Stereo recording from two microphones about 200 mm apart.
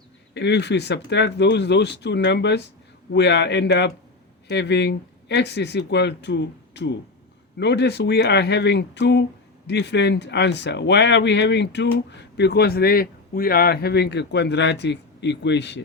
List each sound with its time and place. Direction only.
0.3 s speech: 60° left (ahead or behind)